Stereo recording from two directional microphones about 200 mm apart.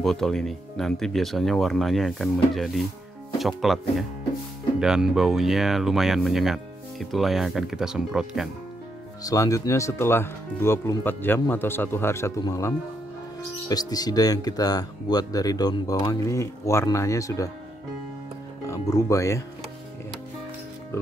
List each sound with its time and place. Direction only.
0.0 s speech: centre (ahead or behind)
9.2 s speech: 15° left (ahead or behind)
18.7 s speech: 15° left (ahead or behind)